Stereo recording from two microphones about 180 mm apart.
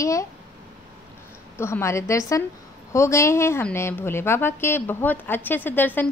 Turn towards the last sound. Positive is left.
turn(degrees=10)  # may be behind; listen again after turning